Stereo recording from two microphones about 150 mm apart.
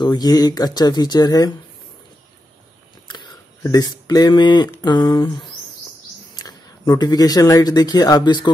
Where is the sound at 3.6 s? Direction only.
25° left (ahead or behind).